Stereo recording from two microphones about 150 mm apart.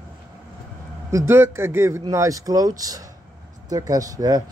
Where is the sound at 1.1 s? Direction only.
20° right (ahead or behind).